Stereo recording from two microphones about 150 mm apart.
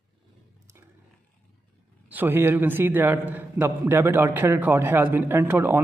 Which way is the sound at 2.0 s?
10° right (ahead or behind).